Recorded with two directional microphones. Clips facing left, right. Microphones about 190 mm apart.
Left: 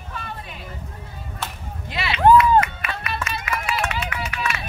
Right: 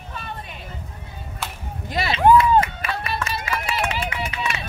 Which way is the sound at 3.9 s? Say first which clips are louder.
Right 1 dB; 25° right (ahead or behind).